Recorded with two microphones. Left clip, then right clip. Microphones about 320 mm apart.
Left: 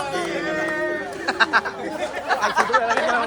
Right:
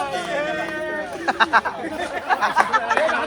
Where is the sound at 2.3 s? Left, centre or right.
Centre.